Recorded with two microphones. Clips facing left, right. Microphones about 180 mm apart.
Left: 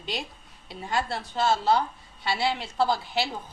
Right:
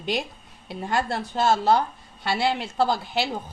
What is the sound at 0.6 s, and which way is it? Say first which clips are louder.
A woman's voice: right 3 dB; 50° right (ahead or behind).